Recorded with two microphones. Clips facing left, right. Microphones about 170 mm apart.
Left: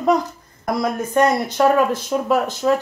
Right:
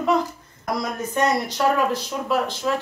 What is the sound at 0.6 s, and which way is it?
Speech, 55° left (ahead or behind).